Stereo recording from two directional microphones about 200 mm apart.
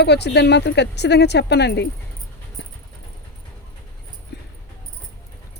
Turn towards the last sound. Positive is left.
turn(degrees=60)  # may be behind; listen again after turning